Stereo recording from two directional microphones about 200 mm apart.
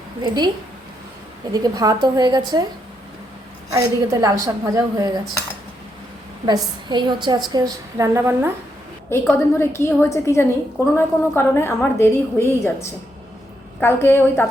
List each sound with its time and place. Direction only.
0.2 s a woman's voice: 20° right (ahead or behind)
1.5 s a woman's voice: 20° right (ahead or behind)
3.7 s a woman's voice: 15° right (ahead or behind)
6.4 s a woman's voice: 20° right (ahead or behind)
9.1 s a woman's voice: 15° left (ahead or behind)